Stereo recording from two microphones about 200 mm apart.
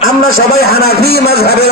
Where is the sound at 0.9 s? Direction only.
50° right (ahead or behind).